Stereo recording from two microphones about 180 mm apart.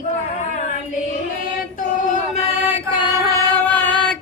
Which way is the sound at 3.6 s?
10° left (ahead or behind).